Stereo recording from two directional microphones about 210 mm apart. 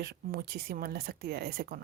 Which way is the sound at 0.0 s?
50° right (ahead or behind).